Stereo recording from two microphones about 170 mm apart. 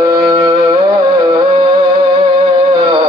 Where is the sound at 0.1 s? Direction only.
25° right (ahead or behind).